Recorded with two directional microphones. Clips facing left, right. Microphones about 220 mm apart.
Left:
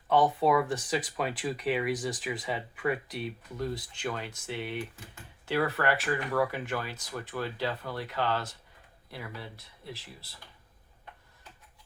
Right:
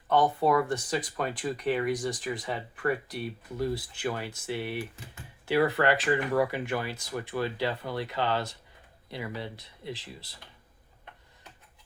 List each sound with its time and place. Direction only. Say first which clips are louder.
0.1 s speech: even; centre (ahead or behind); by 10.2 s 15° right (ahead or behind)